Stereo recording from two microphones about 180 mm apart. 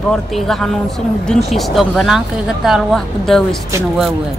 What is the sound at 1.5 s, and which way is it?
Speech, centre (ahead or behind).